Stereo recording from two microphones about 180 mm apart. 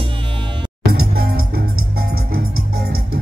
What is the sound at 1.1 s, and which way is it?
Music, 60° right (ahead or behind).